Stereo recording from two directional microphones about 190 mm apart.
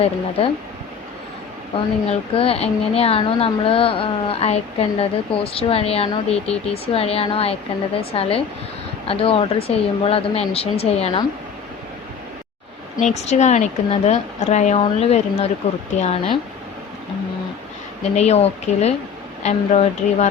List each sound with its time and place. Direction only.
0.0 s a woman's voice: 30° left (ahead or behind)
1.7 s a woman's voice: 30° left (ahead or behind)
13.0 s speech: 35° left (ahead or behind)
18.2 s speech: 35° left (ahead or behind)